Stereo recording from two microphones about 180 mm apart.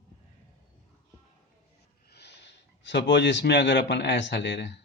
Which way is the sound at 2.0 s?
70° left (ahead or behind).